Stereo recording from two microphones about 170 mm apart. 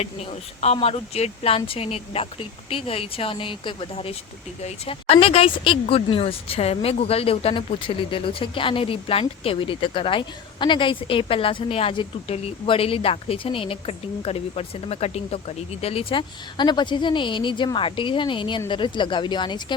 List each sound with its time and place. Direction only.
0.0 s a woman's voice: 40° left (ahead or behind)